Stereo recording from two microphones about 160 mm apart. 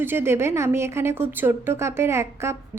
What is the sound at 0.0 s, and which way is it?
Speech, 15° right (ahead or behind).